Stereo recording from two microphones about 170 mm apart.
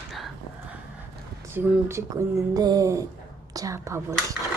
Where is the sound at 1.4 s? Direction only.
10° right (ahead or behind).